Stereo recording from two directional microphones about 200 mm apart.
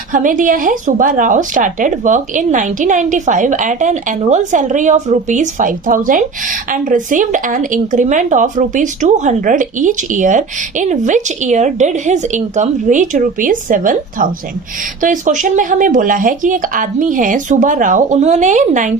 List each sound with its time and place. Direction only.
0.1 s speech: 40° right (ahead or behind)